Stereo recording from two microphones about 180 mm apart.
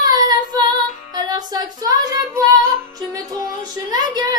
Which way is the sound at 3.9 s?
20° right (ahead or behind).